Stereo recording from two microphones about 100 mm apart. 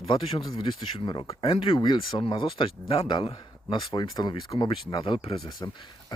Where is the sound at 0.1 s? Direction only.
60° left (ahead or behind).